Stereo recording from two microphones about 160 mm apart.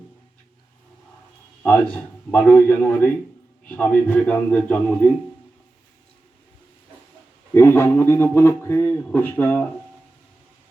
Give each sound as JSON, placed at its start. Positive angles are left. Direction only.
{"t": 1.6, "sound": "a man's voice", "side_deg": 10}
{"t": 7.5, "sound": "a man's voice", "side_deg": 15}